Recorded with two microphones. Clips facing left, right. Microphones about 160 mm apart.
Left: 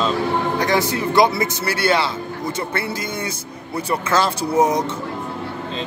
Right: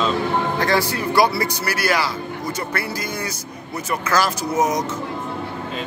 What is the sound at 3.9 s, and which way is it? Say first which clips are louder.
Speech: left 1 dB; 25° left (ahead or behind).